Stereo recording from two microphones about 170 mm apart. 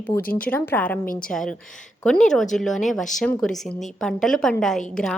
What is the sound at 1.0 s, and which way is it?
Speech, 55° left (ahead or behind).